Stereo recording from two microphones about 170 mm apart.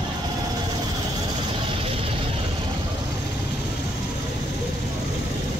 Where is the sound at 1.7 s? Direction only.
30° right (ahead or behind).